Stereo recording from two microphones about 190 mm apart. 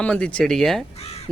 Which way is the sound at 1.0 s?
35° left (ahead or behind).